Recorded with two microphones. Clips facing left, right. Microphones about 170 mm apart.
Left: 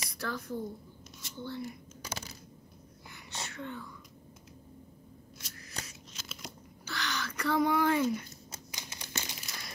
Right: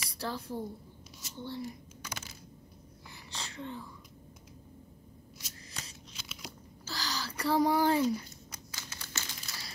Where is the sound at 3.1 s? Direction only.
30° right (ahead or behind).